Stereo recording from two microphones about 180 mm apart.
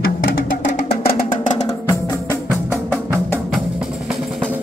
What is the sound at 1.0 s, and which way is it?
Music, 40° left (ahead or behind).